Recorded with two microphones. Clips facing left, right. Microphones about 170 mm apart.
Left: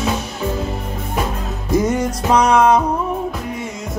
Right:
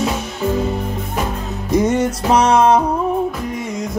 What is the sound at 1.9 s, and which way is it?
Music, 25° right (ahead or behind).